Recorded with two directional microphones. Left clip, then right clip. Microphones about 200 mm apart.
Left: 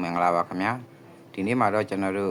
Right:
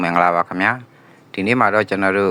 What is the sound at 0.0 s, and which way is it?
Speech, 25° right (ahead or behind).